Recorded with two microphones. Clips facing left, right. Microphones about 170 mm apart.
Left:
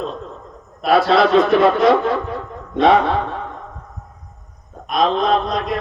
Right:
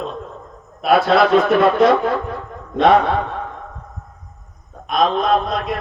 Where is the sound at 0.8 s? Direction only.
Centre (ahead or behind).